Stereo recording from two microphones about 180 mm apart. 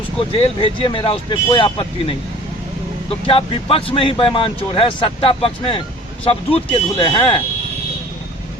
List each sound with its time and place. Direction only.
0.2 s speech: 30° left (ahead or behind)